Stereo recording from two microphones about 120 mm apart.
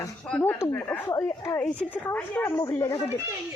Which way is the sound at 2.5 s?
25° left (ahead or behind).